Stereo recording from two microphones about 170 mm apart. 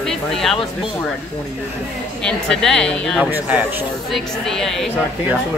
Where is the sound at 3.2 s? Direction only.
5° right (ahead or behind).